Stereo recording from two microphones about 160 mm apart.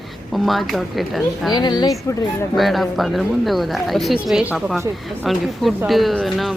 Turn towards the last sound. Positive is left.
turn(degrees=0)  # may be behind; listen again after turning